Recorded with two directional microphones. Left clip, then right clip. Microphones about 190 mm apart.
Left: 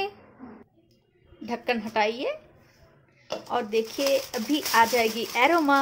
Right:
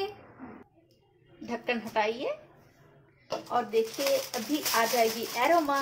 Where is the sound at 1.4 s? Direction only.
25° left (ahead or behind).